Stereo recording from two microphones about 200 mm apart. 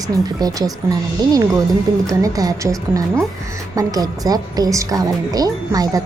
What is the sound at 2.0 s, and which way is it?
A woman's voice, 15° right (ahead or behind).